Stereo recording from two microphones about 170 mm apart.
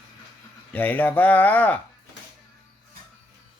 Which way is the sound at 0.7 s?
10° left (ahead or behind).